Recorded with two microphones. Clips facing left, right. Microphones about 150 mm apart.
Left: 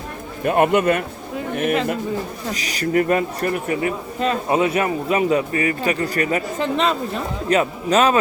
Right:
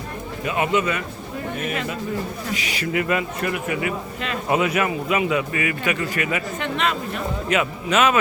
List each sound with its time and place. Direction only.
0.4 s speech: 50° left (ahead or behind)
2.5 s speech: 40° left (ahead or behind)